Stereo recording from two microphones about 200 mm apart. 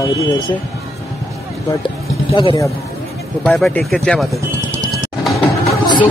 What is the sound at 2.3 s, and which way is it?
Speech, 25° left (ahead or behind).